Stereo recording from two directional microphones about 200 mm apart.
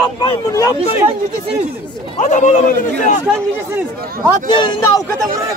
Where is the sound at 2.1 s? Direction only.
40° left (ahead or behind).